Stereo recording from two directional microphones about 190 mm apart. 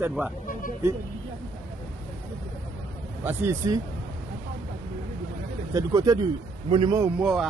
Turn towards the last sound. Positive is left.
turn(degrees=0)  # may be behind; listen again after turning